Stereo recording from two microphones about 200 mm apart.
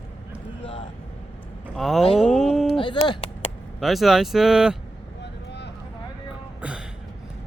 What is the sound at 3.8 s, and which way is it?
Speech, centre (ahead or behind).